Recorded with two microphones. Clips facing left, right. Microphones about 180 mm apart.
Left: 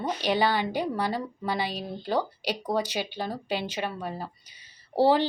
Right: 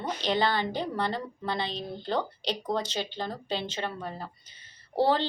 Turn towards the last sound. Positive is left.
turn(degrees=10)  # may be behind; listen again after turning